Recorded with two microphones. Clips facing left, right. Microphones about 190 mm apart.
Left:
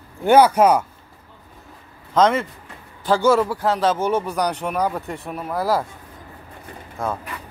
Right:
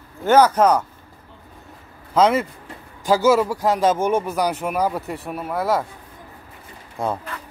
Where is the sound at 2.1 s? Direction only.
5° right (ahead or behind).